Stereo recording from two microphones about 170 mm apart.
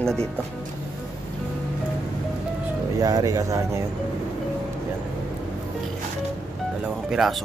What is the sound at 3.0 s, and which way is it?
Speech, 20° right (ahead or behind).